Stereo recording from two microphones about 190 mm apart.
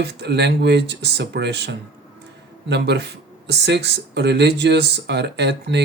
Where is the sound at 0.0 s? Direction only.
60° right (ahead or behind).